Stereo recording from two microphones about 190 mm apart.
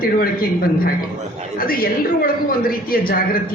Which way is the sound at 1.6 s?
50° left (ahead or behind).